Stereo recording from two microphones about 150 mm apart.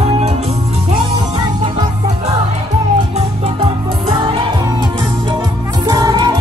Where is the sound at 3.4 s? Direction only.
35° right (ahead or behind).